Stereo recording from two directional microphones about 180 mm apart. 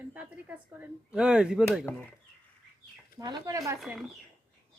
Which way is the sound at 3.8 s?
Centre (ahead or behind).